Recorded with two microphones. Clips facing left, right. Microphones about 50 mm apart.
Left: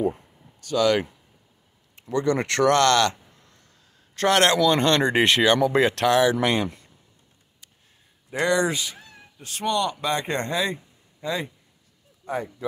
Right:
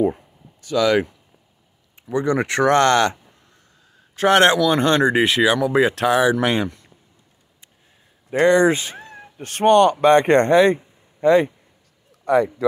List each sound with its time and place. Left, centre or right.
0.7 s speech: right
4.6 s speech: centre
8.3 s speech: right
12.3 s speech: right